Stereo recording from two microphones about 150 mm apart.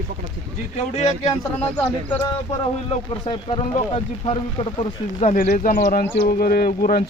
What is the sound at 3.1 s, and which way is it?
Speech, 40° left (ahead or behind).